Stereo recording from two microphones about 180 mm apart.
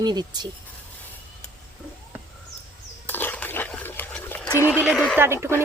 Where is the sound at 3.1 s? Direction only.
10° left (ahead or behind).